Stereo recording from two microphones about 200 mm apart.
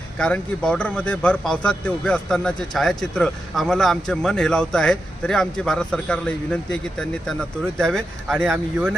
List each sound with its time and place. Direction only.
0.2 s speech: 5° left (ahead or behind)